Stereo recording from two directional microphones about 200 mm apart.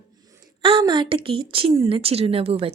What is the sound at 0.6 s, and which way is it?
A woman's voice, 25° right (ahead or behind).